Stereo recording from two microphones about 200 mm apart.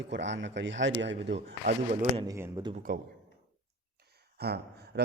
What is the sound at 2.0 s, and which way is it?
Speech, 25° right (ahead or behind).